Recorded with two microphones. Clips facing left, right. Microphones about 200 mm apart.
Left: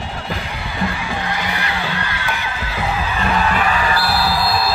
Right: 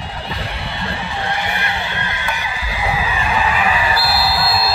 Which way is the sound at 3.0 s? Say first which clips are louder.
Left 2 dB; 10° right (ahead or behind).